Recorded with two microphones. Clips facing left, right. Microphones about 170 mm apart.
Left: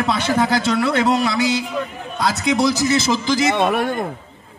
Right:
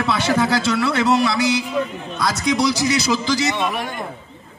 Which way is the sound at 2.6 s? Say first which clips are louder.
Left 2 dB; 50° left (ahead or behind).